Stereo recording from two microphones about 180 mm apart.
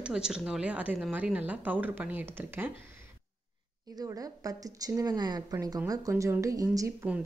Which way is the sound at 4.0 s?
20° right (ahead or behind).